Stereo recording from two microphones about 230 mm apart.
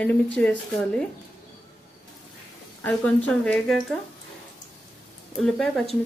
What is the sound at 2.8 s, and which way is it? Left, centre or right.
Speech, centre.